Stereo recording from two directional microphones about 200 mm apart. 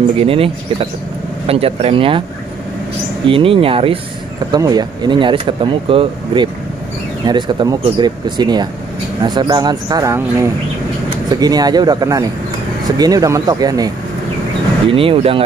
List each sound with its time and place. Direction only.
0.2 s speech: 30° right (ahead or behind)
3.3 s speech: 25° right (ahead or behind)